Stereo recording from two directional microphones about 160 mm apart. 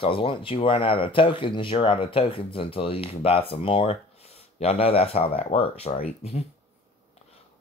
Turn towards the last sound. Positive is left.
turn(degrees=40)  # may be behind; listen again after turning